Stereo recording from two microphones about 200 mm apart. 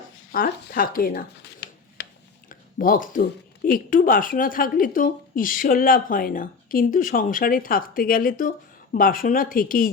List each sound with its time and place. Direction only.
0.3 s speech: 45° left (ahead or behind)
1.6 s a sound: 55° left (ahead or behind)
2.5 s speech: 45° left (ahead or behind)